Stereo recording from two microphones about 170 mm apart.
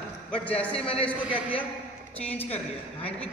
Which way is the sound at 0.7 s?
35° left (ahead or behind).